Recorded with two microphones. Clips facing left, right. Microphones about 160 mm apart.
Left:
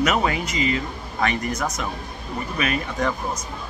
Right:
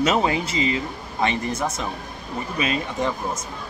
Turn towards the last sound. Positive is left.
turn(degrees=-25)  # may be behind; listen again after turning